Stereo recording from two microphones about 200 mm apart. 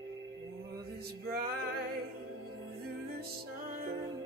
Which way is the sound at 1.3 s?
50° right (ahead or behind).